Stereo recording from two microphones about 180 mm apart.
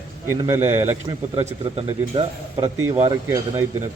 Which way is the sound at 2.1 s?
25° right (ahead or behind).